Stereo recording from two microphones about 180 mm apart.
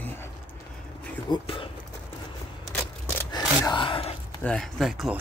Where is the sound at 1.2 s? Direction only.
25° left (ahead or behind).